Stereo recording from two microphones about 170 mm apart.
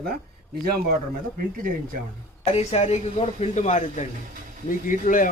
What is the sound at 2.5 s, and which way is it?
A man's voice, 40° left (ahead or behind).